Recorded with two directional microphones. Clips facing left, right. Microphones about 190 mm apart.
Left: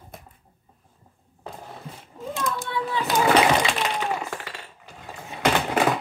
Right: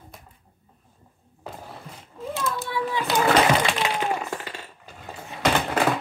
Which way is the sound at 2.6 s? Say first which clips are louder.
Even; 10° right (ahead or behind).